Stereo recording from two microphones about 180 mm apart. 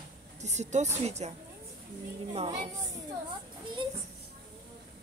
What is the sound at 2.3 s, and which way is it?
Speech, 35° right (ahead or behind).